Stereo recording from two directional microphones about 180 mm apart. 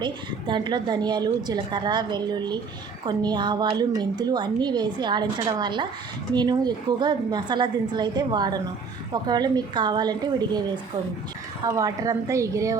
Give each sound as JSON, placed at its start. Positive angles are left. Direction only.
{"t": 0.0, "sound": "a woman's voice", "side_deg": -25}
{"t": 11.6, "sound": "a woman's voice", "side_deg": -20}